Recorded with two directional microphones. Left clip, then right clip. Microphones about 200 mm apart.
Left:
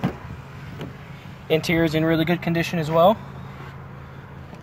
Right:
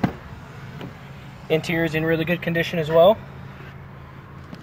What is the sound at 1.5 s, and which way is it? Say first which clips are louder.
Speech: left 1 dB; 30° left (ahead or behind).